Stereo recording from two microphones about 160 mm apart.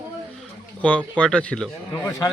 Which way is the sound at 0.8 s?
5° left (ahead or behind).